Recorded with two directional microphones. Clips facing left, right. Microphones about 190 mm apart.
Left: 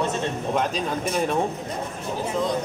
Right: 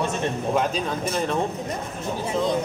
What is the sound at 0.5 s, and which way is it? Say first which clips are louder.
Speech: right 1 dB; centre (ahead or behind).